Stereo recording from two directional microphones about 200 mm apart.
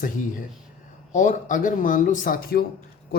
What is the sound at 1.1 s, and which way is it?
Speech, 40° left (ahead or behind).